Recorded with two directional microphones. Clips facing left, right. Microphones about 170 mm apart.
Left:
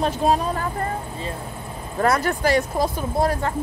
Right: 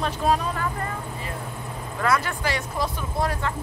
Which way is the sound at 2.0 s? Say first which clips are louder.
Left 4 dB; 40° left (ahead or behind).